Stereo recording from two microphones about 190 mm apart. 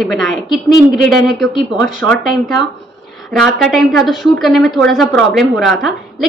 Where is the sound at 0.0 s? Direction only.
Centre (ahead or behind).